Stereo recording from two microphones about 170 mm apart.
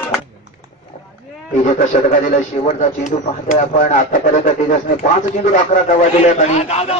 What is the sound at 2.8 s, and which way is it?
A man's voice, 45° left (ahead or behind).